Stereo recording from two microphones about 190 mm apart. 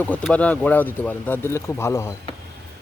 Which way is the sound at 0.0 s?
5° left (ahead or behind).